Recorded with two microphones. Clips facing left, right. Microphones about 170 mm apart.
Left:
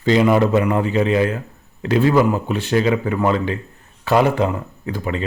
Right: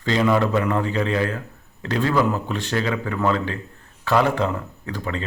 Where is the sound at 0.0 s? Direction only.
15° left (ahead or behind).